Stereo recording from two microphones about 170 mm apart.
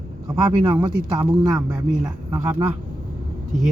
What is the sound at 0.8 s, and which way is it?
Speech, 15° right (ahead or behind).